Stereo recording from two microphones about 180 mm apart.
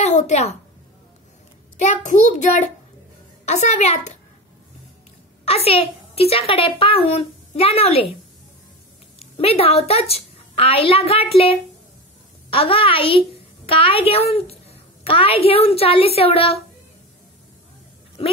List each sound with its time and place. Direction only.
0.0 s a woman's voice: 40° left (ahead or behind)
1.8 s a woman's voice: 40° left (ahead or behind)
5.4 s a woman's voice: 35° left (ahead or behind)
9.2 s a woman's voice: 35° left (ahead or behind)
18.2 s speech: 30° left (ahead or behind)